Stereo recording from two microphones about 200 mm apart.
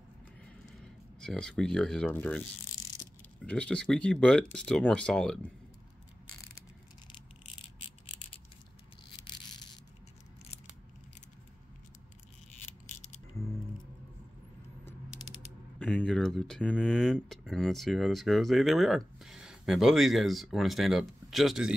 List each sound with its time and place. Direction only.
1.2 s speech: 5° left (ahead or behind)
3.4 s speech: 5° left (ahead or behind)
12.8 s mechanisms: 35° left (ahead or behind)
15.8 s speech: 5° left (ahead or behind)